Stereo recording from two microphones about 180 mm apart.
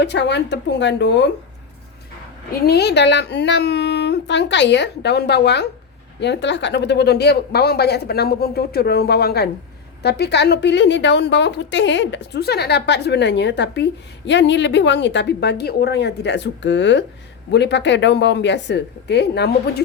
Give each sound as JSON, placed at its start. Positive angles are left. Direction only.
{"t": 0.0, "sound": "a woman's voice", "side_deg": 75}
{"t": 2.5, "sound": "a woman's voice", "side_deg": 65}
{"t": 17.5, "sound": "a woman's voice", "side_deg": 70}